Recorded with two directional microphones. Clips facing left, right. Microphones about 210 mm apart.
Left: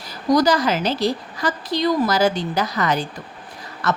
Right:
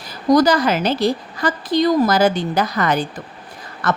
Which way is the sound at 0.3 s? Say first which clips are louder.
Right 2 dB; 55° right (ahead or behind).